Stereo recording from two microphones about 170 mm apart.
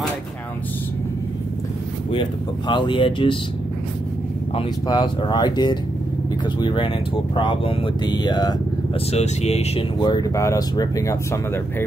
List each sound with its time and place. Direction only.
2.0 s speech: 30° left (ahead or behind)
4.6 s speech: 25° left (ahead or behind)
9.1 s speech: 40° left (ahead or behind); by 11.6 s 20° left (ahead or behind)